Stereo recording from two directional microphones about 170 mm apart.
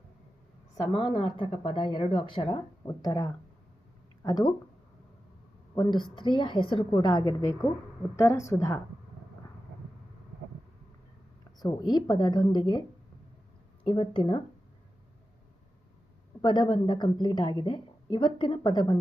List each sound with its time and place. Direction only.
0.8 s speech: 25° left (ahead or behind)
5.7 s a woman's voice: 25° left (ahead or behind)
11.6 s speech: 25° left (ahead or behind)
13.8 s speech: 30° left (ahead or behind)
16.4 s speech: 25° left (ahead or behind)